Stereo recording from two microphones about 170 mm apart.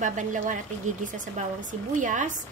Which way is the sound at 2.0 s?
50° right (ahead or behind).